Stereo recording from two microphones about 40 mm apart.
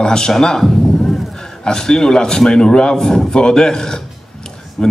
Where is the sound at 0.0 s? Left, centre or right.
Centre.